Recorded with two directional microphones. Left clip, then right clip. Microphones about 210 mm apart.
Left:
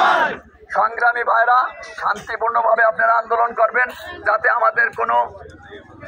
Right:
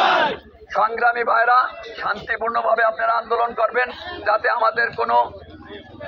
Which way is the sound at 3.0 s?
15° left (ahead or behind).